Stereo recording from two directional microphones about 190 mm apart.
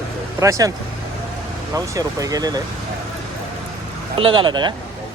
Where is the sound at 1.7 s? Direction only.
20° right (ahead or behind).